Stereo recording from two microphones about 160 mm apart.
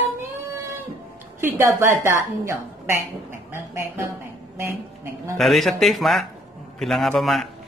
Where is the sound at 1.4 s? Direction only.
15° right (ahead or behind).